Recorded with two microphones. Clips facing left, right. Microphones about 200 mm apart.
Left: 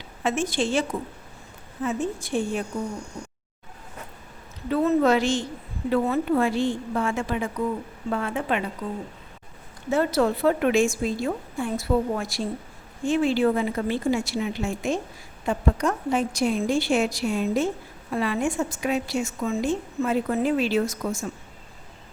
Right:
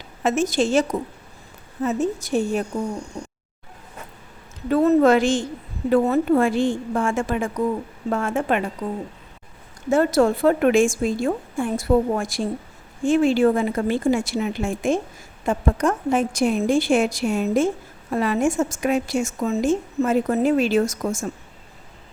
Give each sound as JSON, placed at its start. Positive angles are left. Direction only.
{"t": 0.2, "sound": "a woman's voice", "side_deg": -40}
{"t": 4.7, "sound": "a woman's voice", "side_deg": -40}
{"t": 9.9, "sound": "a woman's voice", "side_deg": -45}